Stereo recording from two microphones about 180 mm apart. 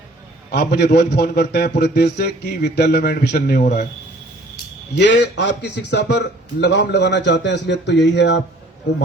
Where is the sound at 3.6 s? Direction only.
40° left (ahead or behind).